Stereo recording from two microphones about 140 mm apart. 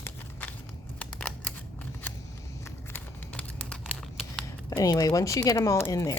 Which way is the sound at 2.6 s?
10° left (ahead or behind).